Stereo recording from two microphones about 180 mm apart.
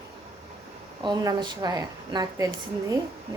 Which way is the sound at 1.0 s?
25° right (ahead or behind).